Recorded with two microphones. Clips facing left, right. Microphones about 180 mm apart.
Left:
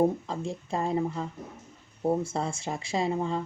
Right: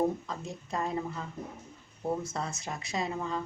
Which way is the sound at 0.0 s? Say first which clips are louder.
Left 5 dB; 30° left (ahead or behind).